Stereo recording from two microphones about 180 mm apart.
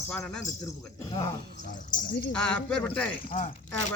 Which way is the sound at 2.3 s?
5° left (ahead or behind).